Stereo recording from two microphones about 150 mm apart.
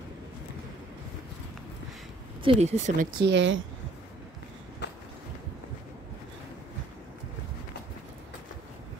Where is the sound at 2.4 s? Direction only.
40° right (ahead or behind); by 3.2 s 60° right (ahead or behind).